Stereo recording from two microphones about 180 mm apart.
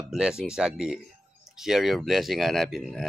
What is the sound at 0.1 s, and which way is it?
Speech, 5° right (ahead or behind).